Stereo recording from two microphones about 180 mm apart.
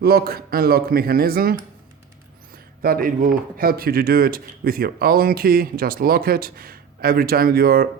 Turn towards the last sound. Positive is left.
turn(degrees=-55)  # may be behind; listen again after turning